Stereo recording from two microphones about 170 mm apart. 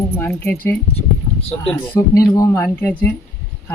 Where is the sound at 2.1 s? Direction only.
20° left (ahead or behind).